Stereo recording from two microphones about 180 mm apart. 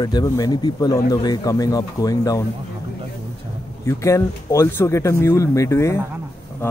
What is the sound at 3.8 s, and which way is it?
Speech, 15° left (ahead or behind).